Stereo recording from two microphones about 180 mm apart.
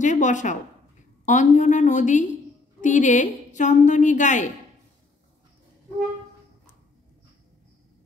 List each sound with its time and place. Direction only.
0.0 s a woman's voice: 45° left (ahead or behind)